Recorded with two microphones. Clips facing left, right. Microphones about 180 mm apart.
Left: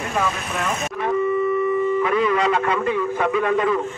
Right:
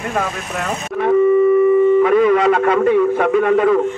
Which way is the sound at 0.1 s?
50° right (ahead or behind).